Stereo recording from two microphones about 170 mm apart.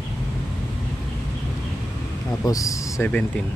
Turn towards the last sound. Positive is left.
turn(degrees=20)  # may be behind; listen again after turning